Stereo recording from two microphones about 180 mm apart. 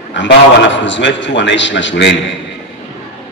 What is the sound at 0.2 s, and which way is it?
A man's voice, 90° left.